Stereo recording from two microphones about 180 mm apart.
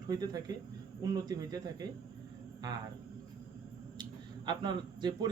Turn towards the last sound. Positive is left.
turn(degrees=-25)  # may be behind; listen again after turning